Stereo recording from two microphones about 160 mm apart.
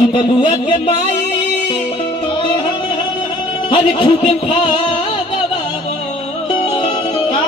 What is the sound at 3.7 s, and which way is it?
Speech, 35° left (ahead or behind).